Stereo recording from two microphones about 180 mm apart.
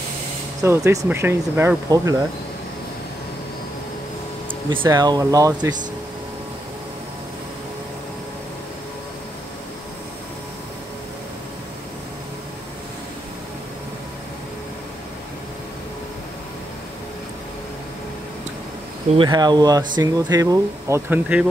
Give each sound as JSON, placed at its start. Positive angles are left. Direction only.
{"t": 0.6, "sound": "speech", "side_deg": -15}
{"t": 4.8, "sound": "speech", "side_deg": -20}
{"t": 19.1, "sound": "speech", "side_deg": -25}